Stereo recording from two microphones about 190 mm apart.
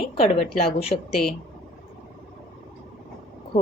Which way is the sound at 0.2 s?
30° left (ahead or behind).